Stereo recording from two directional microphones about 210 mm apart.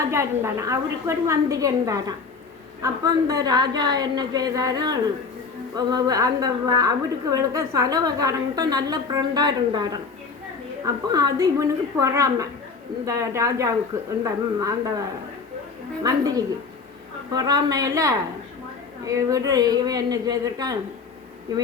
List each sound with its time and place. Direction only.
0.1 s a woman's voice: 15° right (ahead or behind)
16.0 s a woman's voice: 15° right (ahead or behind)